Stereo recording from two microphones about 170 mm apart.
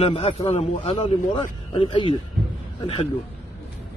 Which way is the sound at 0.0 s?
35° left (ahead or behind).